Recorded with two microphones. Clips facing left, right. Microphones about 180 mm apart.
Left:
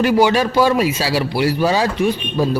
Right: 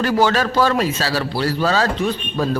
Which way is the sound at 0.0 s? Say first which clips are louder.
Left 3 dB; 15° left (ahead or behind).